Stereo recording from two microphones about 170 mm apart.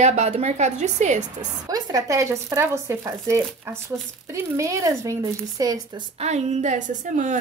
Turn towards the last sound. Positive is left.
turn(degrees=-45)  # may be behind; listen again after turning